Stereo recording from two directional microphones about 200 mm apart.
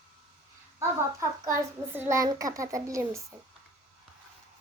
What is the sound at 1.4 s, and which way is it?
A child's voice, 15° right (ahead or behind).